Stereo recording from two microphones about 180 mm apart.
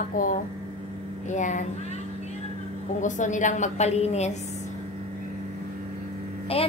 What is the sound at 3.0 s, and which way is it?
A woman's voice, 45° left (ahead or behind).